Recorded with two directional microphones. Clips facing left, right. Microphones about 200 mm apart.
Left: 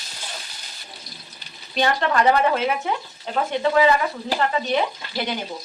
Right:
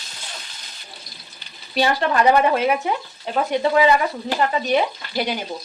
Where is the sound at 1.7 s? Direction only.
10° right (ahead or behind).